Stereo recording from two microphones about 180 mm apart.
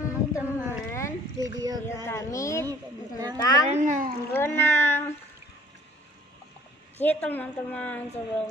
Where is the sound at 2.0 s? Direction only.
15° left (ahead or behind).